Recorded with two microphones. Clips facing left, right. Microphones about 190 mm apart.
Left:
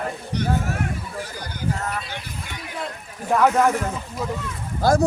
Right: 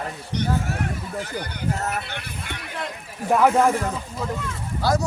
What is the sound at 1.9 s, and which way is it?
Speech, 65° right (ahead or behind).